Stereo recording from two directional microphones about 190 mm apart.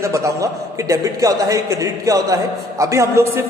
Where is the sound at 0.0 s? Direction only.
15° right (ahead or behind).